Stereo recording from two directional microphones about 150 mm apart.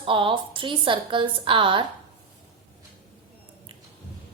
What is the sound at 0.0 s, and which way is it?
A woman's voice, 35° right (ahead or behind).